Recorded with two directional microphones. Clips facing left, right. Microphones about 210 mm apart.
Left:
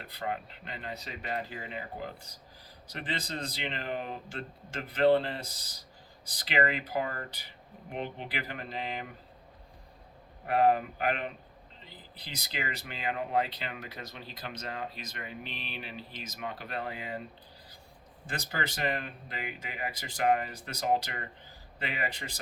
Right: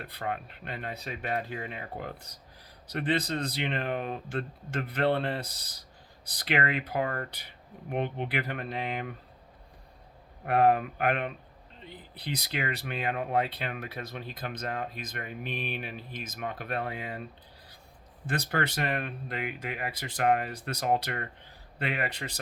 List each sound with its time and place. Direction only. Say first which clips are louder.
0.0 s speech: right 1 dB; 55° right (ahead or behind)
10.4 s speech: right 2 dB; 55° right (ahead or behind)
18.3 s speech: right 6 dB; 60° right (ahead or behind)